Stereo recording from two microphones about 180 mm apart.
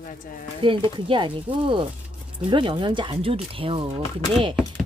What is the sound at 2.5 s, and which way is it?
Speech, 25° right (ahead or behind).